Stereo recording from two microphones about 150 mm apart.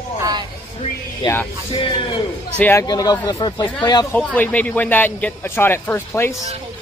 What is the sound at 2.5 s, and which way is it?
Speech, 15° left (ahead or behind).